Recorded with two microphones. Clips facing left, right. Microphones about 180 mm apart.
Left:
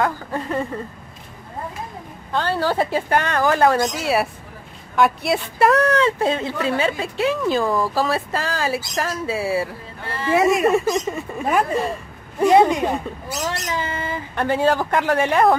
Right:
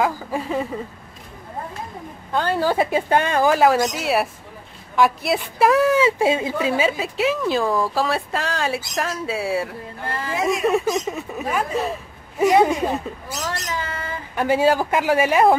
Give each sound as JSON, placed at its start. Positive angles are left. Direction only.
{"t": 0.0, "sound": "a woman's voice", "side_deg": -5}
{"t": 2.3, "sound": "speech", "side_deg": -15}
{"t": 3.6, "sound": "a woman's voice", "side_deg": 0}
{"t": 13.3, "sound": "speech", "side_deg": 20}
{"t": 14.3, "sound": "speech", "side_deg": -5}